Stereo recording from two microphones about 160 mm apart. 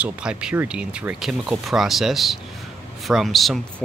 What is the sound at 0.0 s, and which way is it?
Speech, 5° right (ahead or behind).